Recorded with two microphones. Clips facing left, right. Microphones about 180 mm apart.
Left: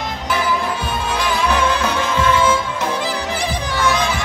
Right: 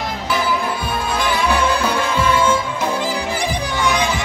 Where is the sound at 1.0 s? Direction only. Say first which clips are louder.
Even; 10° right (ahead or behind).